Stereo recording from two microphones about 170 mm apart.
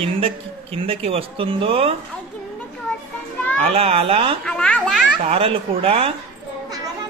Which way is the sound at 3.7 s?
35° right (ahead or behind).